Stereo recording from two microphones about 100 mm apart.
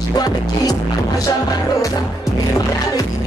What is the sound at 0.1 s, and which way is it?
Music, 40° left (ahead or behind).